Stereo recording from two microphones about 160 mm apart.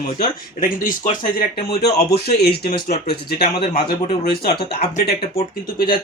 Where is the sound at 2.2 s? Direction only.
75° left (ahead or behind).